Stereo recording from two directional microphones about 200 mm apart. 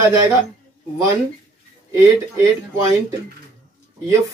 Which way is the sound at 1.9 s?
15° right (ahead or behind).